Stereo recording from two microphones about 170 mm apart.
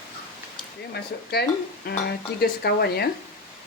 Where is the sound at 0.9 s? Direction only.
70° left (ahead or behind).